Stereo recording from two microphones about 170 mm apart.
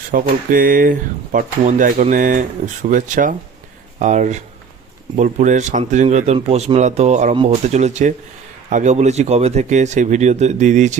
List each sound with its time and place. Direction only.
0.1 s speech: 55° right (ahead or behind)